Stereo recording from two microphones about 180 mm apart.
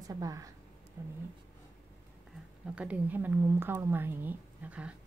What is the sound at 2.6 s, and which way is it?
A woman's voice, 5° right (ahead or behind).